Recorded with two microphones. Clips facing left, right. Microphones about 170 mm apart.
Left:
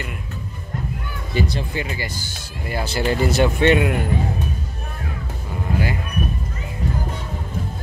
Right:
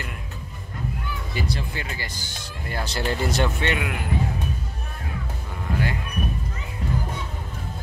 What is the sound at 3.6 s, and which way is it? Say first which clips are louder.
Speech: left 10 dB; 30° left (ahead or behind).